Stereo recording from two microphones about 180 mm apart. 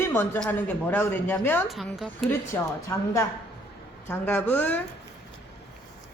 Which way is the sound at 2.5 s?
15° left (ahead or behind).